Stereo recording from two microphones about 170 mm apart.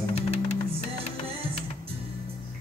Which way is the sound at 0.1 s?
35° left (ahead or behind).